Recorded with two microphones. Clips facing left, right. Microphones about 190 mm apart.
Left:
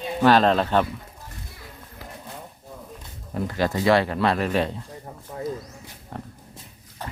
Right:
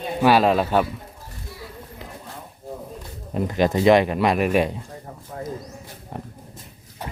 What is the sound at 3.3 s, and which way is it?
Speech, 20° right (ahead or behind).